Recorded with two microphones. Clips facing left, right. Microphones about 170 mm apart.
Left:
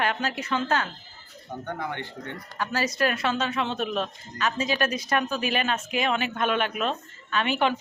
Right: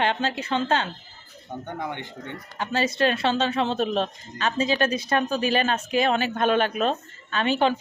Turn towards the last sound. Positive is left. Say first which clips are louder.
# right 2 dB
turn(degrees=-35)  # may be behind; listen again after turning